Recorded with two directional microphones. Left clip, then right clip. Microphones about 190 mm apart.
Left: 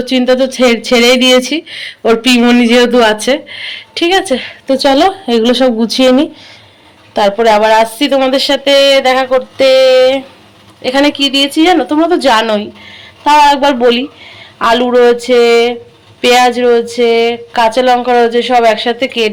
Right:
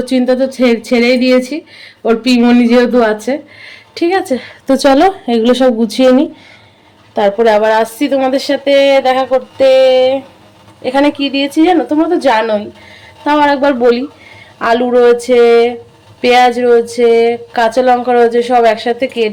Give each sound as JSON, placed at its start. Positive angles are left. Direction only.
{"t": 0.0, "sound": "speech", "side_deg": -5}
{"t": 4.6, "sound": "speech", "side_deg": -25}